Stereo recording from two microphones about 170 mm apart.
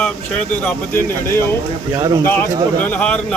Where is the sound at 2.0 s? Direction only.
25° right (ahead or behind).